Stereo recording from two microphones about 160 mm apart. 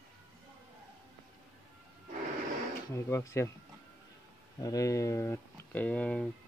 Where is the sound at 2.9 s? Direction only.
15° left (ahead or behind).